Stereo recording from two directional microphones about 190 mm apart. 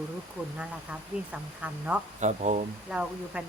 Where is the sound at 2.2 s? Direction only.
40° right (ahead or behind).